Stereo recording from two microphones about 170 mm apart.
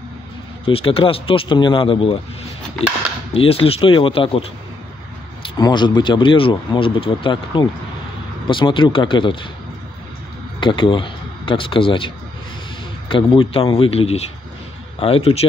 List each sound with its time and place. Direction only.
0.7 s speech: 35° left (ahead or behind)
3.3 s speech: 35° left (ahead or behind)
10.6 s speech: 30° left (ahead or behind)
13.1 s speech: 30° left (ahead or behind)